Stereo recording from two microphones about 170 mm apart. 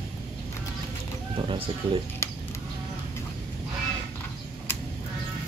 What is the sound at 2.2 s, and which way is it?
Sheep, 15° left (ahead or behind).